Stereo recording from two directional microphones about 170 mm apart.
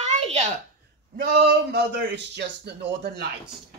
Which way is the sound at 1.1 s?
70° right (ahead or behind).